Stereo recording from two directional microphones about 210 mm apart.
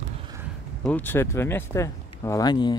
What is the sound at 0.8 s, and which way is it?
Speech, 10° left (ahead or behind).